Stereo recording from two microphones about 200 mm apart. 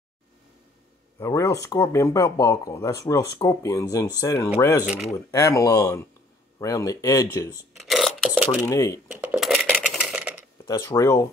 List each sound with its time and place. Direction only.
1.2 s speech: 15° left (ahead or behind)
4.8 s speech: 5° right (ahead or behind)
5.1 s speech: 15° left (ahead or behind)
7.7 s filing: centre (ahead or behind)
8.6 s speech: 15° left (ahead or behind)
9.1 s coin: 5° right (ahead or behind)
9.8 s a sound: centre (ahead or behind)
10.7 s speech: 15° left (ahead or behind)